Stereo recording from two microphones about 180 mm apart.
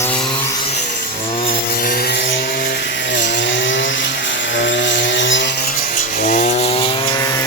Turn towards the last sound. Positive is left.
turn(degrees=20)  # may be behind; listen again after turning